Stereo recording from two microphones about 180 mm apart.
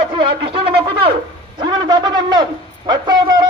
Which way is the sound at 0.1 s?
30° right (ahead or behind).